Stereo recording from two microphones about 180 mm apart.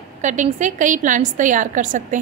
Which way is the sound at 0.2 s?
40° right (ahead or behind).